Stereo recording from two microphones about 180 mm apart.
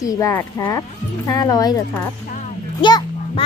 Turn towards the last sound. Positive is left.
turn(degrees=25)  # may be behind; listen again after turning